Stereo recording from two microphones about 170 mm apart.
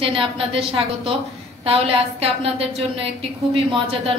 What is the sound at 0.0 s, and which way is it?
A woman's voice, 30° right (ahead or behind).